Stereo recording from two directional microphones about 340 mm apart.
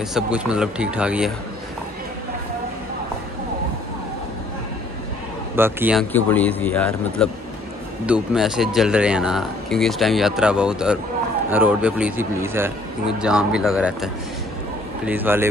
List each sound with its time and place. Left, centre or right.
0.1 s speech: centre
5.6 s speech: centre